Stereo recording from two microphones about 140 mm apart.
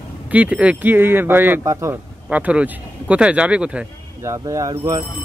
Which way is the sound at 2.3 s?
10° right (ahead or behind).